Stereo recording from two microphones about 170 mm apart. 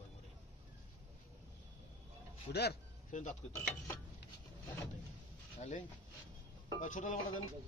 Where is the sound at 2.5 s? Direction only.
75° left (ahead or behind).